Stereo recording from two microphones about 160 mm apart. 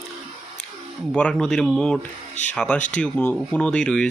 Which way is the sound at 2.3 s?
45° left (ahead or behind).